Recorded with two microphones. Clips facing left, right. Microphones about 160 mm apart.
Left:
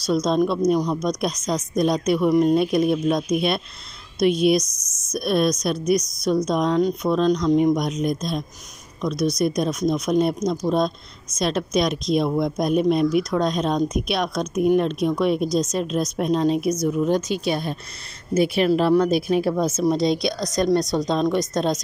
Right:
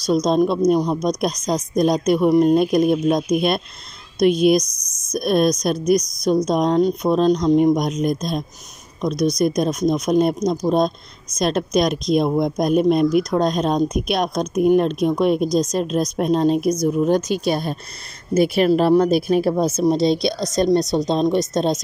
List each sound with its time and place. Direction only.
0.0 s a woman's voice: 40° right (ahead or behind)